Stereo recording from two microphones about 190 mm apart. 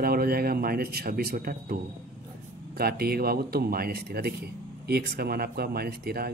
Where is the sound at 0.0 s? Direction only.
55° right (ahead or behind).